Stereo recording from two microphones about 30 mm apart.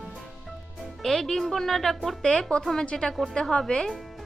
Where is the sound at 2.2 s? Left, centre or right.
Left.